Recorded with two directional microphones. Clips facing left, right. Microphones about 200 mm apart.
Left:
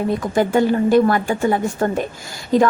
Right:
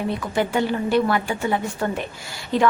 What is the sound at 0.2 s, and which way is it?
A woman's voice, 45° left (ahead or behind).